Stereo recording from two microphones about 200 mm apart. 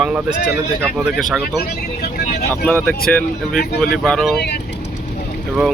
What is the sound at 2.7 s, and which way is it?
Speech, 5° left (ahead or behind).